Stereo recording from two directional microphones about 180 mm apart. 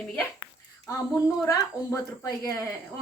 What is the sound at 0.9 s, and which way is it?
A woman's voice, 15° left (ahead or behind).